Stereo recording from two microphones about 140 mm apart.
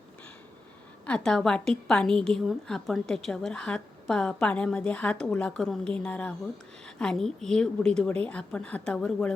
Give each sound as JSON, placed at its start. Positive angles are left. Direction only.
{"t": 1.0, "sound": "a woman's voice", "side_deg": 5}